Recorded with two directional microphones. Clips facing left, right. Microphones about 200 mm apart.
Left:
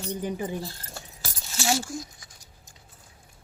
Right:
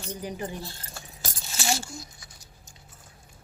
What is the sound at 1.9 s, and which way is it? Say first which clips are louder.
Patter: left 6 dB; 90° left.